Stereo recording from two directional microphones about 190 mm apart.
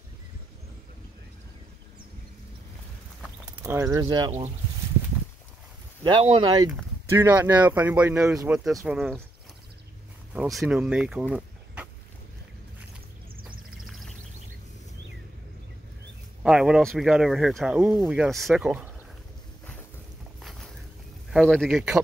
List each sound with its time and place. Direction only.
3.6 s speech: 15° right (ahead or behind)
6.0 s speech: 25° right (ahead or behind)
7.1 s speech: 10° right (ahead or behind)
10.3 s speech: 5° right (ahead or behind)
13.8 s a sound: centre (ahead or behind)
16.4 s speech: 5° right (ahead or behind)
20.3 s boat: centre (ahead or behind)
21.3 s speech: centre (ahead or behind)